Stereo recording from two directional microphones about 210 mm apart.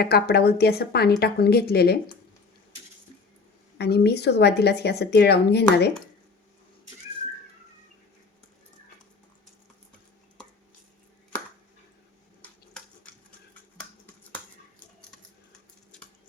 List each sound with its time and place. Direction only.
0.0 s speech: 50° left (ahead or behind)
3.8 s speech: 50° left (ahead or behind)
12.4 s a sound: 5° left (ahead or behind)